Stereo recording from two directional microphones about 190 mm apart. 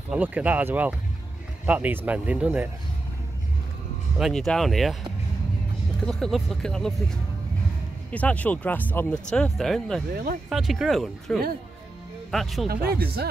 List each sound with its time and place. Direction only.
0.1 s speech: 10° right (ahead or behind)
4.2 s speech: centre (ahead or behind)
6.0 s speech: 5° left (ahead or behind)
12.6 s speech: 55° right (ahead or behind)